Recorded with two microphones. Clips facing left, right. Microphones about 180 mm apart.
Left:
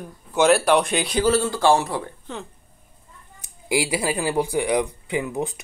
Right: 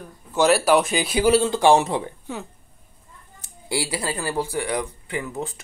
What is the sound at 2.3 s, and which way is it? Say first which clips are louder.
Speech: right 1 dB; 10° right (ahead or behind).